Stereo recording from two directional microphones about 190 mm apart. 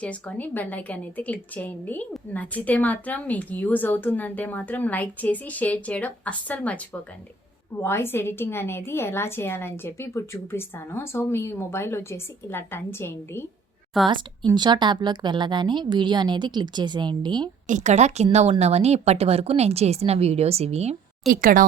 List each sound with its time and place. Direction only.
0.0 s a woman's voice: 5° left (ahead or behind)
14.1 s a woman's voice: 25° right (ahead or behind)
17.7 s a woman's voice: 40° right (ahead or behind)
21.4 s speech: 45° right (ahead or behind)